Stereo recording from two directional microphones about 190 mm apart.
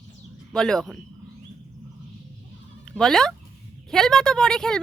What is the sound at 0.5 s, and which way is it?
Speech, 5° left (ahead or behind).